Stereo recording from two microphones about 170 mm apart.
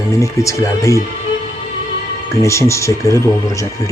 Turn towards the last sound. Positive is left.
turn(degrees=20)  # may be behind; listen again after turning